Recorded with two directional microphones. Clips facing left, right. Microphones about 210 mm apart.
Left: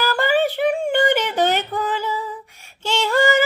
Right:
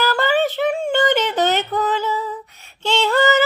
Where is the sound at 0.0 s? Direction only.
10° left (ahead or behind).